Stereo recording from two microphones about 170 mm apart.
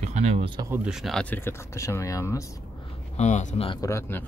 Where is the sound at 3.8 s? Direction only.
15° left (ahead or behind).